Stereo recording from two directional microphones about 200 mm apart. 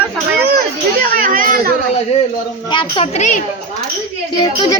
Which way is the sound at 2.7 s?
25° left (ahead or behind).